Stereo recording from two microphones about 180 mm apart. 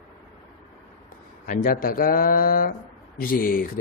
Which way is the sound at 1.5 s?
50° left (ahead or behind).